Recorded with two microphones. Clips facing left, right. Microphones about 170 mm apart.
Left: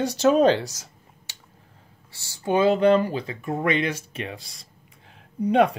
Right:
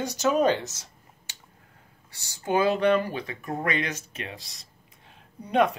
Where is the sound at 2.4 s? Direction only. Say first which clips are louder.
Left 4 dB; 25° left (ahead or behind).